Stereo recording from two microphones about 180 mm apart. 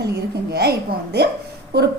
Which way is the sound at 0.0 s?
65° right (ahead or behind).